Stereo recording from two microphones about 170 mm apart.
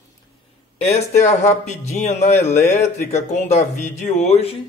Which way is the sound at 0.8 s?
40° left (ahead or behind).